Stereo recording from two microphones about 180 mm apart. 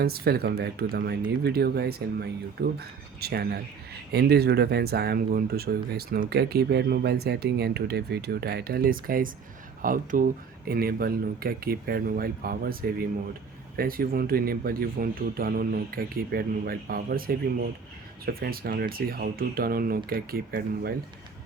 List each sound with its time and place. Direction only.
0.0 s speech: 60° right (ahead or behind)